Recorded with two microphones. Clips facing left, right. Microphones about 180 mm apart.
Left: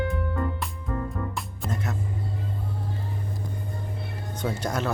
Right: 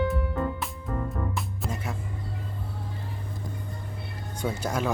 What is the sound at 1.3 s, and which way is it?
Music, 5° right (ahead or behind).